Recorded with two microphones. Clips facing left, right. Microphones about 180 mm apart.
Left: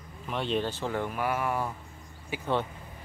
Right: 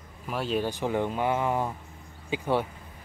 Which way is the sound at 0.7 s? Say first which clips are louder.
Right 4 dB; 15° right (ahead or behind).